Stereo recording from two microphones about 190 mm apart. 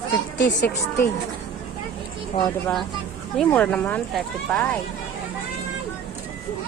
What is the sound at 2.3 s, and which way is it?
Speech, 30° left (ahead or behind).